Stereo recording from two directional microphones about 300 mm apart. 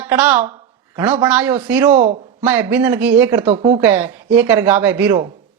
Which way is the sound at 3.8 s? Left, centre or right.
Centre.